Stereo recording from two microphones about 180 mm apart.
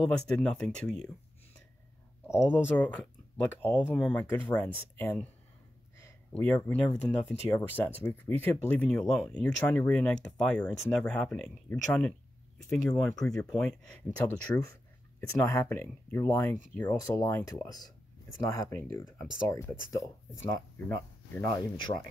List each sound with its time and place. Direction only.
0.0 s speech: 5° left (ahead or behind)
2.2 s speech: 15° left (ahead or behind)
20.9 s speech: 15° left (ahead or behind)